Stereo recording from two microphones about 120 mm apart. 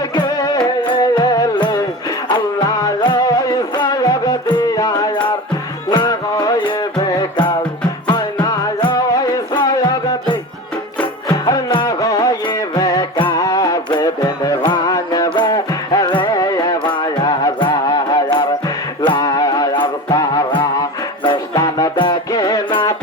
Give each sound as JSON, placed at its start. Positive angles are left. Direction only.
{"t": 0.2, "sound": "music", "side_deg": 35}
{"t": 11.4, "sound": "music", "side_deg": 35}